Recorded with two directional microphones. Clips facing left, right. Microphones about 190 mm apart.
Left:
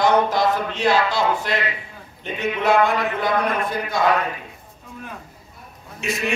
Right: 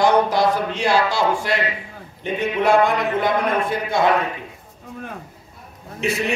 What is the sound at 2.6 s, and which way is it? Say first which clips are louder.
Speech: right 1 dB; 15° right (ahead or behind).